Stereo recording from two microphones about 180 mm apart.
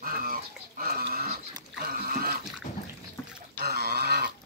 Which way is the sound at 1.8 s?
55° right (ahead or behind).